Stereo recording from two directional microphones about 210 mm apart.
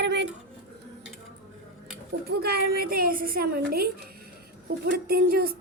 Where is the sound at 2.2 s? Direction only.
50° right (ahead or behind).